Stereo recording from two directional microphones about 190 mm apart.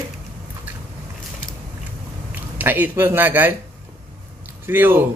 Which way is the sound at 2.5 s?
10° right (ahead or behind).